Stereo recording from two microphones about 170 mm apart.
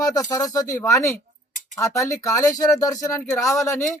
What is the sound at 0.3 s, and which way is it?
Speech, 20° left (ahead or behind).